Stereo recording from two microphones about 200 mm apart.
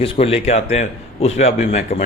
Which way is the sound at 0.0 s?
30° left (ahead or behind).